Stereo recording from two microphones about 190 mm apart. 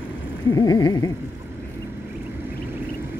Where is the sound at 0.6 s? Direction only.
20° left (ahead or behind).